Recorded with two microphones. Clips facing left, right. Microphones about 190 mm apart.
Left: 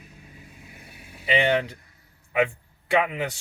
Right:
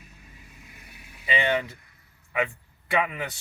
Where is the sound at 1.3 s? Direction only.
25° left (ahead or behind).